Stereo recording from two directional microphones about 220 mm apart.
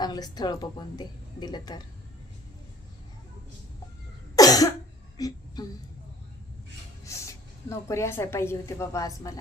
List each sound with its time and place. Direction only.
0.0 s a woman's voice: 20° left (ahead or behind)
4.4 s cough: 15° left (ahead or behind)
5.1 s a sound: 20° left (ahead or behind)
7.0 s a woman's voice: 15° left (ahead or behind)